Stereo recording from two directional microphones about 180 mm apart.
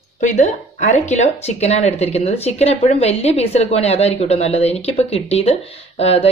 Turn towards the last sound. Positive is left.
turn(degrees=35)  # may be behind; listen again after turning